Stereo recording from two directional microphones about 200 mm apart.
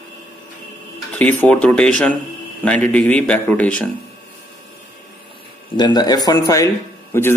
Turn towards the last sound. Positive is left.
turn(degrees=10)  # may be behind; listen again after turning